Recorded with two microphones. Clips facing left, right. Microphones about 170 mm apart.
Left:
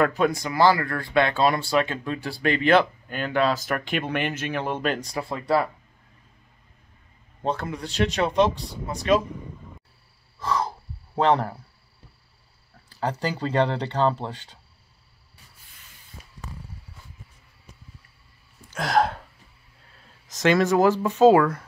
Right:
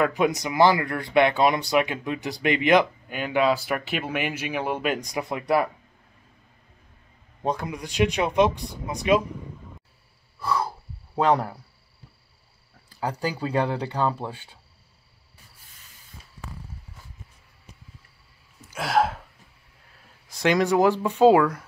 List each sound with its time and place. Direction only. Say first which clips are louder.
0.1 s speech: even; 20° right (ahead or behind)
7.4 s speech: even; 10° right (ahead or behind)
9.4 s a sound: even; centre (ahead or behind)
10.4 s breathing: even; 10° right (ahead or behind)
11.1 s speech: left 1 dB; 10° right (ahead or behind)
12.9 s speech: left 1 dB; 10° right (ahead or behind)
18.7 s hiccup: left 1 dB; 5° right (ahead or behind)
20.4 s speech: left 1 dB; 15° right (ahead or behind)